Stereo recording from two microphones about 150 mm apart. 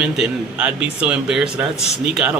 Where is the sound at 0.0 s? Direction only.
5° right (ahead or behind).